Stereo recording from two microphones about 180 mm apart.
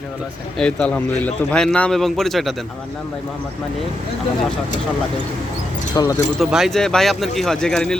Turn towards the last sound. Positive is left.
turn(degrees=5)  # may be behind; listen again after turning